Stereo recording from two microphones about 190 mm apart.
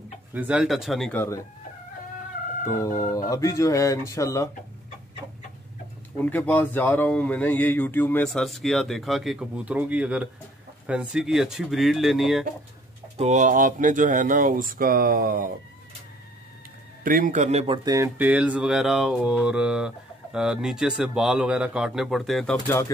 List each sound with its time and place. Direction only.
0.3 s speech: 5° right (ahead or behind); by 1.4 s 10° left (ahead or behind)
2.6 s fowl: 15° left (ahead or behind)
3.0 s speech: 15° left (ahead or behind)
6.1 s speech: 10° left (ahead or behind)
13.2 s speech: 40° right (ahead or behind)
17.0 s a man's voice: 45° right (ahead or behind)
17.8 s speech: 15° right (ahead or behind); by 22.6 s centre (ahead or behind)